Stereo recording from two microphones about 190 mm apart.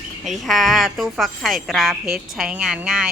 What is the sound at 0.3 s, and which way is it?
A woman's voice, centre (ahead or behind).